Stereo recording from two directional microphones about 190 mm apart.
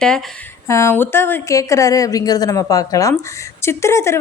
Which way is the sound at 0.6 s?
15° left (ahead or behind).